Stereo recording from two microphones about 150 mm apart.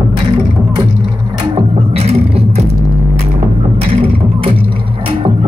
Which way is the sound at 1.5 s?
45° right (ahead or behind).